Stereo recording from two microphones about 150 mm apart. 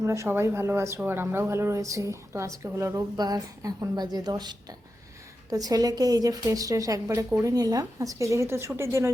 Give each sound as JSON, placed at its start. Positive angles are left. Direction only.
{"t": 0.0, "sound": "speech", "side_deg": -20}